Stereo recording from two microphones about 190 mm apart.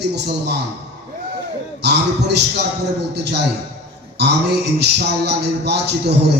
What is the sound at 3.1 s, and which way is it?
Speech, 60° right (ahead or behind).